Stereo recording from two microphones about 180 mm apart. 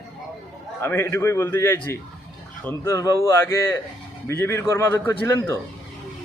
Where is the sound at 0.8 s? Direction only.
15° left (ahead or behind).